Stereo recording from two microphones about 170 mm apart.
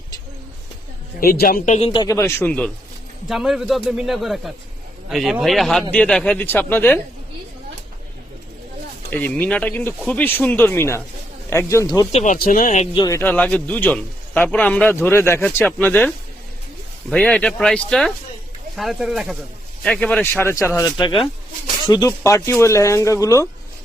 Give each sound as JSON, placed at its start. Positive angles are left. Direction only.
{"t": 1.2, "sound": "speech", "side_deg": 60}
{"t": 1.9, "sound": "a man's voice", "side_deg": 20}
{"t": 9.0, "sound": "a man's voice", "side_deg": 10}
{"t": 12.1, "sound": "speech", "side_deg": 50}
{"t": 13.1, "sound": "a man's voice", "side_deg": 15}